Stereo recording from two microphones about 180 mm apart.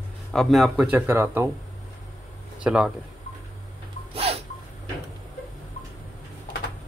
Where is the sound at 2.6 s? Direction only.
5° right (ahead or behind).